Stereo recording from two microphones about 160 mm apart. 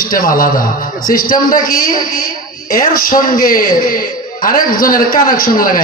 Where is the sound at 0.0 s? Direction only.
65° left (ahead or behind).